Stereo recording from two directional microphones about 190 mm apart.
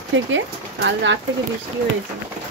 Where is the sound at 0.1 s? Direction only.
75° right (ahead or behind).